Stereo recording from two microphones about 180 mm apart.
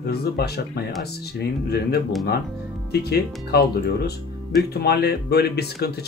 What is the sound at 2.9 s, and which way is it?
Speech, 60° left (ahead or behind).